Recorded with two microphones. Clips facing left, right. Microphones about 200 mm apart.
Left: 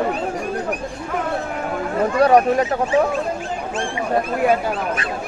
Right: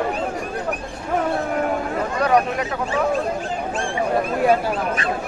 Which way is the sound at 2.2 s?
30° left (ahead or behind).